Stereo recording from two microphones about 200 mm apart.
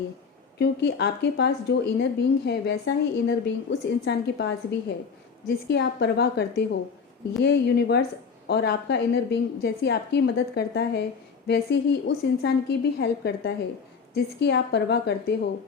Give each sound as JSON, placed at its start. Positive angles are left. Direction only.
{"t": 0.6, "sound": "a woman's voice", "side_deg": 55}